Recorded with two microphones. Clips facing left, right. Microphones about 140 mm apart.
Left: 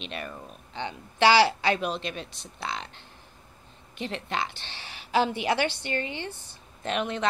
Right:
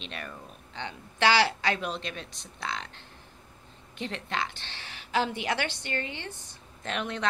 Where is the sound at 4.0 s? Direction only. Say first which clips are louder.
Left 2 dB; 15° left (ahead or behind).